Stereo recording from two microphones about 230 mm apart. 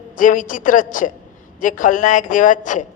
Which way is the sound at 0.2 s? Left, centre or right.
Left.